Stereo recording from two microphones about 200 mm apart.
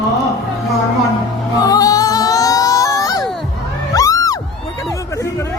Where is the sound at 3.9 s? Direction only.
15° left (ahead or behind).